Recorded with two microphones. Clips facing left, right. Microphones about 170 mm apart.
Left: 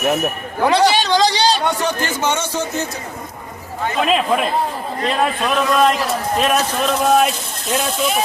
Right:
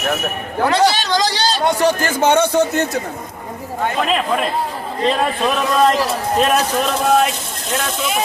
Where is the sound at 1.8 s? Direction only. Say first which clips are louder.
Right 5 dB; 50° right (ahead or behind).